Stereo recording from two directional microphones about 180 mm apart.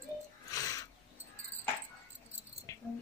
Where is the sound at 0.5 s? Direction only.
20° left (ahead or behind).